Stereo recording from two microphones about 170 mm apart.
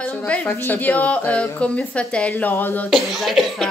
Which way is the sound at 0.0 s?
10° left (ahead or behind).